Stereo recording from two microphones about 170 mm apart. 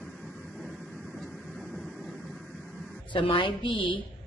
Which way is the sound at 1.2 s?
Centre (ahead or behind).